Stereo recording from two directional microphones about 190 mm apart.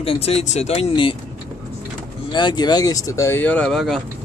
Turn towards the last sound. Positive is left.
turn(degrees=0)  # may be behind; listen again after turning